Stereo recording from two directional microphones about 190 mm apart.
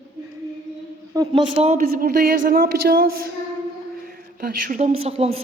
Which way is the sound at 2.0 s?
50° right (ahead or behind).